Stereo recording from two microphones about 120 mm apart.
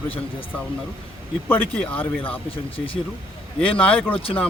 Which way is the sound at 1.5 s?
15° left (ahead or behind).